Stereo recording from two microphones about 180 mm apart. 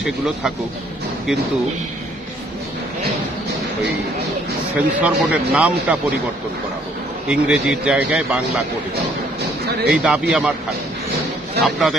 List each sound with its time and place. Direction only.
4.7 s a man's voice: 10° right (ahead or behind)
7.2 s a man's voice: 5° right (ahead or behind)
9.8 s a man's voice: 5° right (ahead or behind)
11.6 s a man's voice: centre (ahead or behind)